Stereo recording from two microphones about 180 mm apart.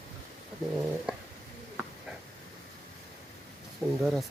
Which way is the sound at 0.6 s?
Centre (ahead or behind).